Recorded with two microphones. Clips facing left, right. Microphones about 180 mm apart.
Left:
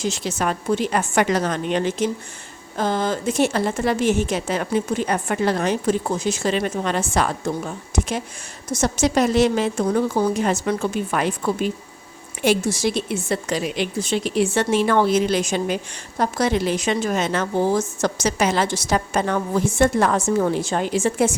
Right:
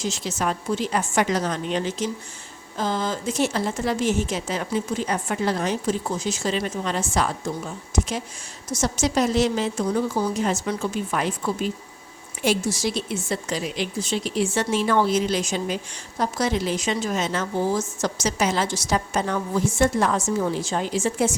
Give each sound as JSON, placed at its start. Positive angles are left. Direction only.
{"t": 0.0, "sound": "a woman's voice", "side_deg": 60}